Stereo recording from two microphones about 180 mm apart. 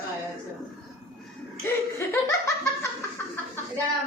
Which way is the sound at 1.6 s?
15° left (ahead or behind).